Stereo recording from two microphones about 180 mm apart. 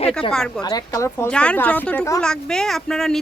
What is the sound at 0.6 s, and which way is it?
Speech, 20° left (ahead or behind).